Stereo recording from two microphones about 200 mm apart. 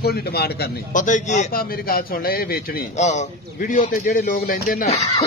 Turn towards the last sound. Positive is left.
turn(degrees=30)  # may be behind; listen again after turning